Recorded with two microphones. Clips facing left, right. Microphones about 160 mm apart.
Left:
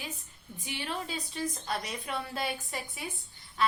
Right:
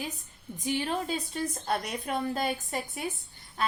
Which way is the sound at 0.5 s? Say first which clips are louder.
Right 7 dB; 40° right (ahead or behind).